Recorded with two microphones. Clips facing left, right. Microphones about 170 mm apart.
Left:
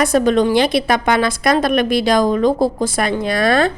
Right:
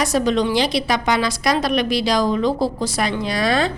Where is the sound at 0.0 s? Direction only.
55° left (ahead or behind).